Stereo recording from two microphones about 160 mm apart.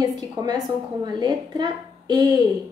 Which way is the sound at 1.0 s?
25° right (ahead or behind).